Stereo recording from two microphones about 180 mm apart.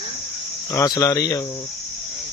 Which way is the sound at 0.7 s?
20° left (ahead or behind).